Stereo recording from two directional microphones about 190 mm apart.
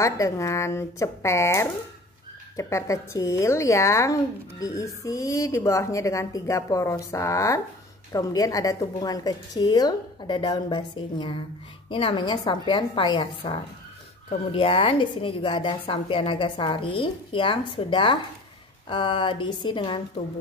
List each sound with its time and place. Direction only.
0.0 s a woman's voice: 15° left (ahead or behind)